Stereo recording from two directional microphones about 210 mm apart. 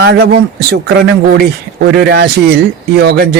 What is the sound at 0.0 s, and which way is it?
Speech, 50° right (ahead or behind).